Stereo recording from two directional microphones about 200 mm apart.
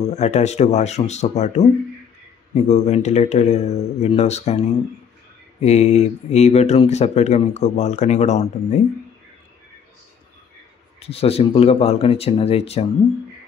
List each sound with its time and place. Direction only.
0.1 s speech: 35° left (ahead or behind)
11.0 s speech: 30° left (ahead or behind)